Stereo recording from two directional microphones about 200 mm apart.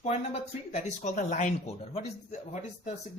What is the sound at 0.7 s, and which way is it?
Speech, 35° left (ahead or behind).